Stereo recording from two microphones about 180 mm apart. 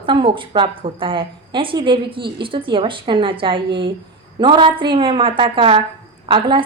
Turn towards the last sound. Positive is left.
turn(degrees=-25)  # may be behind; listen again after turning